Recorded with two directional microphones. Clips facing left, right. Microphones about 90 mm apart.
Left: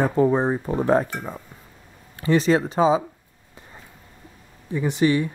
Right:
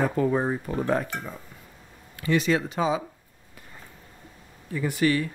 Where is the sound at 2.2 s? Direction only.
35° left (ahead or behind).